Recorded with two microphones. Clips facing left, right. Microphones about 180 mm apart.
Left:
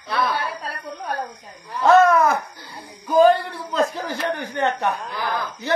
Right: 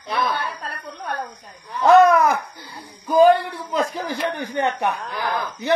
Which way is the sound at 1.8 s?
15° right (ahead or behind).